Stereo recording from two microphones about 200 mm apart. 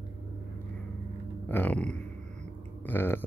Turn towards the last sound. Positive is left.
turn(degrees=10)  # may be behind; listen again after turning